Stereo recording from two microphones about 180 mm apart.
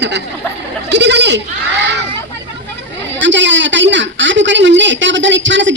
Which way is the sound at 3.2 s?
90° right.